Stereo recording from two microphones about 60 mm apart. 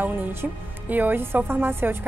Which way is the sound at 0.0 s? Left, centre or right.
Right.